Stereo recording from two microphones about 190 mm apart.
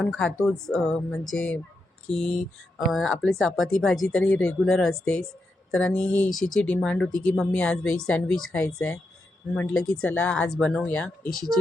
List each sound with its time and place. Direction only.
0.4 s speech: 5° left (ahead or behind)